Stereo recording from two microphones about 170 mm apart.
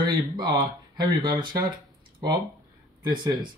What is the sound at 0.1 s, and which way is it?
Speech, 25° right (ahead or behind).